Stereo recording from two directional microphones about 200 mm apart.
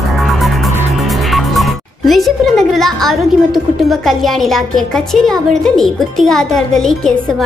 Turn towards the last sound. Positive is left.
turn(degrees=0)  # may be behind; listen again after turning